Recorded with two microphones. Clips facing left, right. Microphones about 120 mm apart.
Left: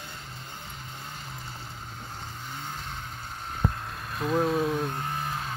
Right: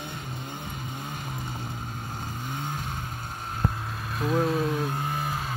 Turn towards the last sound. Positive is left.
turn(degrees=-5)  # may be behind; listen again after turning